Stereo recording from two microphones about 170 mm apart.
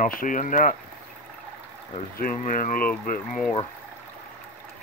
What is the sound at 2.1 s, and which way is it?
Speech, 55° left (ahead or behind).